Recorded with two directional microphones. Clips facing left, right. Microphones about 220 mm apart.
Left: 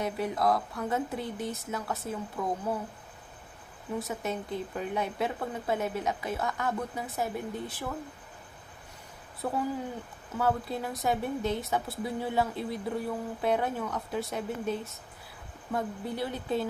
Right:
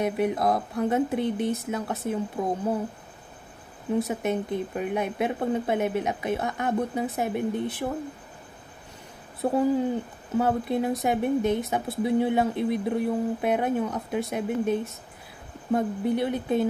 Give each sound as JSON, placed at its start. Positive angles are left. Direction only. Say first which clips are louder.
{"t": 0.0, "sound": "speech", "louder": "right 5 dB", "side_deg": -20}
{"t": 3.9, "sound": "speech", "louder": "right 8 dB", "side_deg": -20}
{"t": 9.4, "sound": "speech", "louder": "right 9 dB", "side_deg": -30}